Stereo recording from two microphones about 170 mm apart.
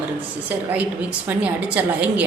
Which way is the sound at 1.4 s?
10° right (ahead or behind).